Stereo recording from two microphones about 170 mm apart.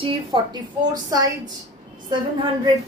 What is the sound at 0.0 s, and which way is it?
Speech, 25° right (ahead or behind).